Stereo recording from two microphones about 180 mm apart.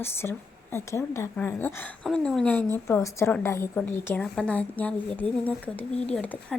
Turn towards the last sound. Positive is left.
turn(degrees=10)  # may be behind; listen again after turning